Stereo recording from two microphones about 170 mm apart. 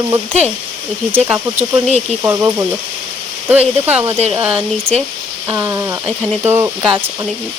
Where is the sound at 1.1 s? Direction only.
10° right (ahead or behind).